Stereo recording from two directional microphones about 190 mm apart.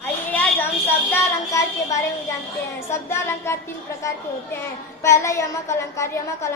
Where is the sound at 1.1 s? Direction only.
15° left (ahead or behind).